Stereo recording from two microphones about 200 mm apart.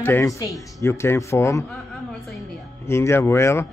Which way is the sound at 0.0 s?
15° left (ahead or behind).